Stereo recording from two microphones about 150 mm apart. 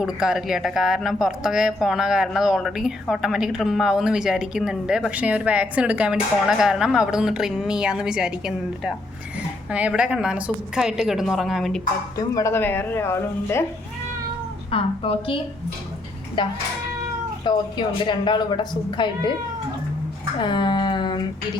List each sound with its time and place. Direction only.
0.0 s a woman's voice: 5° right (ahead or behind)
12.1 s speech: 20° left (ahead or behind)
14.7 s a woman's voice: 40° left (ahead or behind)
16.4 s a woman's voice: 30° left (ahead or behind)
20.4 s a woman's voice: 30° left (ahead or behind)